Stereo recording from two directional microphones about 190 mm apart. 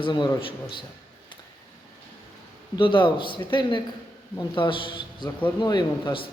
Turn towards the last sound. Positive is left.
turn(degrees=25)  # may be behind; listen again after turning